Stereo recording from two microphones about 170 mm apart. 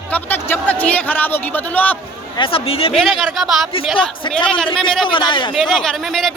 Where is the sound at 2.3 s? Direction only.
30° left (ahead or behind).